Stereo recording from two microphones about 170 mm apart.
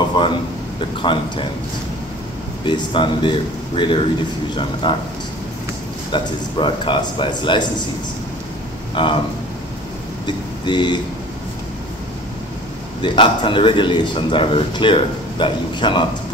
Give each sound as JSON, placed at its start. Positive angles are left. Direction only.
{"t": 0.1, "sound": "a man's voice", "side_deg": 30}
{"t": 2.6, "sound": "a man's voice", "side_deg": 30}
{"t": 6.1, "sound": "a man's voice", "side_deg": 30}
{"t": 8.9, "sound": "speech", "side_deg": 30}
{"t": 10.2, "sound": "speech", "side_deg": 25}
{"t": 13.0, "sound": "a man's voice", "side_deg": 30}